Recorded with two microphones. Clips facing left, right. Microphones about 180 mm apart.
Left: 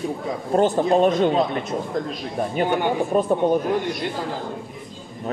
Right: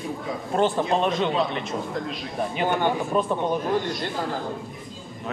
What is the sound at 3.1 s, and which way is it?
Speech, 45° left (ahead or behind).